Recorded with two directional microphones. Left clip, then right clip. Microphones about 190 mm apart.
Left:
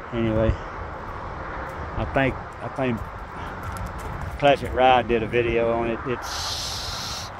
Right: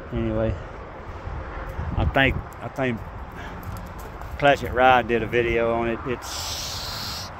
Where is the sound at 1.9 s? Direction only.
20° right (ahead or behind).